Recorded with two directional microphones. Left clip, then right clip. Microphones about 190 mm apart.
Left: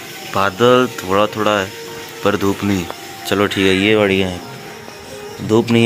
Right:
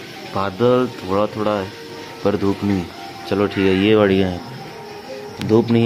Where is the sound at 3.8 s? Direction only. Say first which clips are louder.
Left 1 dB; 15° right (ahead or behind).